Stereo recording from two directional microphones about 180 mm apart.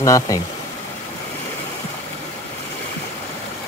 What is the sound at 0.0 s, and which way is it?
Speech, 20° left (ahead or behind).